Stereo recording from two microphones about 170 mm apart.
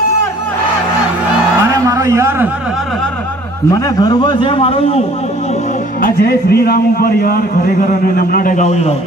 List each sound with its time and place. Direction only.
1.9 s a sound: 20° right (ahead or behind)
4.0 s a man's voice: 25° left (ahead or behind)
5.9 s a man's voice: 60° left (ahead or behind)